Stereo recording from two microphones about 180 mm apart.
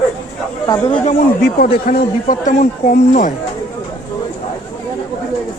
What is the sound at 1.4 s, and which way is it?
Speech, 65° left (ahead or behind).